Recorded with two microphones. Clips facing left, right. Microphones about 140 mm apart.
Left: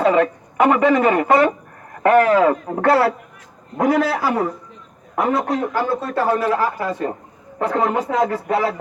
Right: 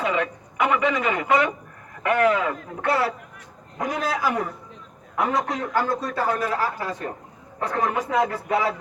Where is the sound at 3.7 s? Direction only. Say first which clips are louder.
Left 9 dB; 90° left.